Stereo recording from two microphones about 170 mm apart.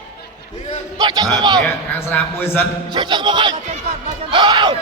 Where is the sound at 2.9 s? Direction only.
25° right (ahead or behind).